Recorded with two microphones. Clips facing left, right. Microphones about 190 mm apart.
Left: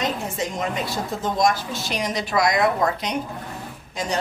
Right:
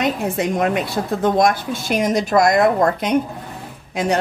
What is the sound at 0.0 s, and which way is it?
A woman's voice, 65° right (ahead or behind).